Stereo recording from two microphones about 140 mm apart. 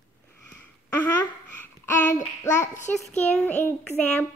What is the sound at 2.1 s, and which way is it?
Child singing, 20° left (ahead or behind).